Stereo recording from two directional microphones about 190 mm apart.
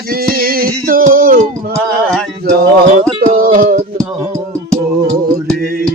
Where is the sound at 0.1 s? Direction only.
50° right (ahead or behind).